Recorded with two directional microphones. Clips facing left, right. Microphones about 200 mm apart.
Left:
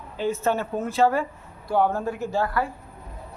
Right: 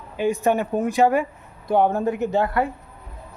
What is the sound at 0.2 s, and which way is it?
Speech, 15° right (ahead or behind).